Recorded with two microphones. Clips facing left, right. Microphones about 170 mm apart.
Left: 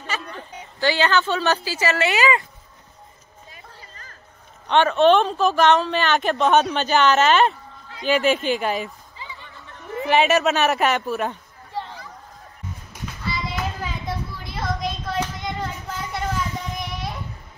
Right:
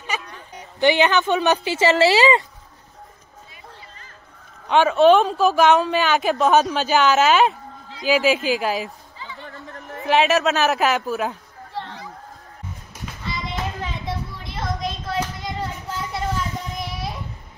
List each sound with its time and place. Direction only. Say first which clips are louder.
0.7 s speech: right 3 dB; 20° right (ahead or behind)
4.6 s a woman's voice: right 2 dB; 5° right (ahead or behind)
10.0 s speech: even; centre (ahead or behind)
13.5 s a sound: even; centre (ahead or behind)